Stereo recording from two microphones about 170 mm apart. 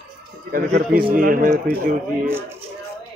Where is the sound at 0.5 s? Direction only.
60° right (ahead or behind).